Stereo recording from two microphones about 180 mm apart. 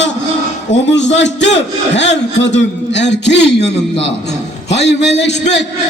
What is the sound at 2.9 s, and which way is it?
Music, 75° left (ahead or behind).